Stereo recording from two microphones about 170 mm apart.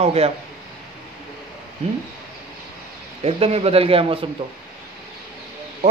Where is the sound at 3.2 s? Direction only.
35° right (ahead or behind).